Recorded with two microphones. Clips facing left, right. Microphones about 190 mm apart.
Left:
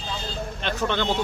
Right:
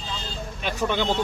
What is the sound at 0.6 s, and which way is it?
Speech, 10° right (ahead or behind).